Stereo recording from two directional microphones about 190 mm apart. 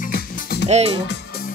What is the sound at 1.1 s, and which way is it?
Music, 60° left (ahead or behind).